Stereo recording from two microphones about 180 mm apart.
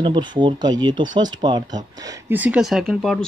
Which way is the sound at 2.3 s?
10° right (ahead or behind).